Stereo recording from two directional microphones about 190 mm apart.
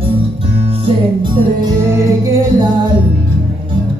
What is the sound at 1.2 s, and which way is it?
Music, 20° right (ahead or behind).